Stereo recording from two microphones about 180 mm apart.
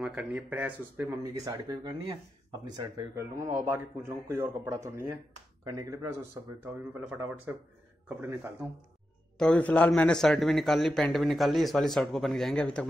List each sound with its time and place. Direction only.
0.0 s speech: 5° right (ahead or behind)
1.0 s speech: 20° right (ahead or behind)
9.4 s speech: 5° left (ahead or behind)